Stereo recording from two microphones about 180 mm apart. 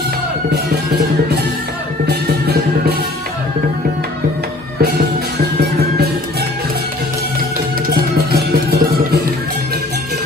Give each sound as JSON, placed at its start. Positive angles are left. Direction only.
{"t": 2.0, "sound": "music", "side_deg": -65}
{"t": 5.4, "sound": "music", "side_deg": -60}
{"t": 7.9, "sound": "music", "side_deg": -60}